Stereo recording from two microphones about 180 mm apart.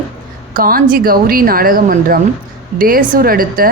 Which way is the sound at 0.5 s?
50° right (ahead or behind).